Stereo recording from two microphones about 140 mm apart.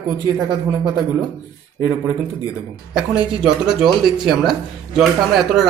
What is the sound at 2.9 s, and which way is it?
Speech, 5° right (ahead or behind).